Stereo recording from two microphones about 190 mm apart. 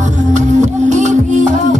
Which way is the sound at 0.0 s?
40° right (ahead or behind).